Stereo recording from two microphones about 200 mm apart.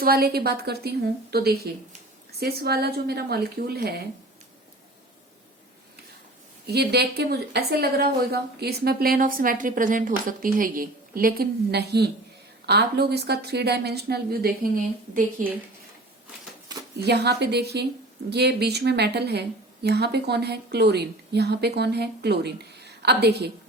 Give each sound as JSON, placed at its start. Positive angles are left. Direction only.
{"t": 0.0, "sound": "a woman's voice", "side_deg": -50}
{"t": 6.7, "sound": "a woman's voice", "side_deg": -55}
{"t": 17.0, "sound": "a woman's voice", "side_deg": -55}